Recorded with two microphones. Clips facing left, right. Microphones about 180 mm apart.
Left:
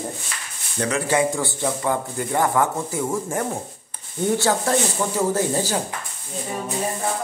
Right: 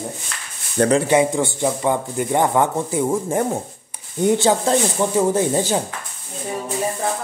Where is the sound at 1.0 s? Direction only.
20° right (ahead or behind).